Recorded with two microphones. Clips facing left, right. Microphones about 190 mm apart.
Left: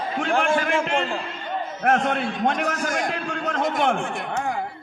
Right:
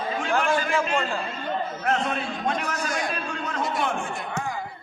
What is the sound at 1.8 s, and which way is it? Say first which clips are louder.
Speech: left 7 dB; 55° left (ahead or behind).